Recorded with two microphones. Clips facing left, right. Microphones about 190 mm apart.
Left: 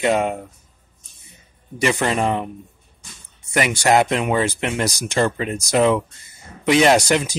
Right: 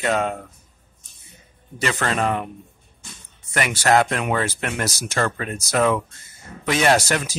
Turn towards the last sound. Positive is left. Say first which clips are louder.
# left 3 dB
turn(degrees=15)  # may be behind; listen again after turning